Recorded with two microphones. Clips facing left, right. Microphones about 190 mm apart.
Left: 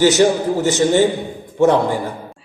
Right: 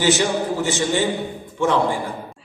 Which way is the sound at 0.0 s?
40° left (ahead or behind).